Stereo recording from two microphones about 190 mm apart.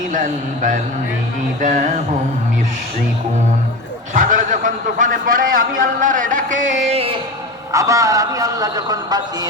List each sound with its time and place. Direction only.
0.1 s a man's voice: 45° right (ahead or behind)
1.6 s a sound: 40° right (ahead or behind)
4.1 s a man's voice: 45° right (ahead or behind)
7.7 s a man's voice: 15° right (ahead or behind)